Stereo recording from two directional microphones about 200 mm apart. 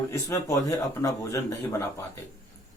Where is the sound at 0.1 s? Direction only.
15° left (ahead or behind).